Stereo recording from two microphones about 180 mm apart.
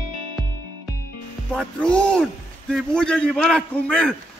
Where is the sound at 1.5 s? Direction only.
Centre (ahead or behind).